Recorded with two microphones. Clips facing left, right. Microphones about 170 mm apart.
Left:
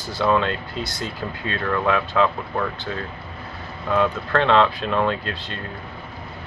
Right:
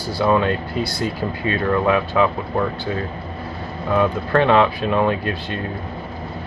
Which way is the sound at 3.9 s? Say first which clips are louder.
Right 3 dB; 10° right (ahead or behind).